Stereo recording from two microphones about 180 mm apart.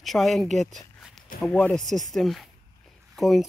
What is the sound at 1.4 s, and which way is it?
Speech, 5° left (ahead or behind).